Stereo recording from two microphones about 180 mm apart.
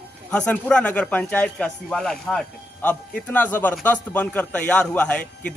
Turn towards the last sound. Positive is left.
turn(degrees=5)  # may be behind; listen again after turning